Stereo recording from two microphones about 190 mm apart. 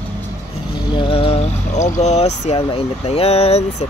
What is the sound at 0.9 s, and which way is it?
Speech, 25° left (ahead or behind).